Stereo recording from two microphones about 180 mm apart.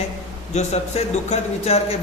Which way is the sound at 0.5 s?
40° left (ahead or behind).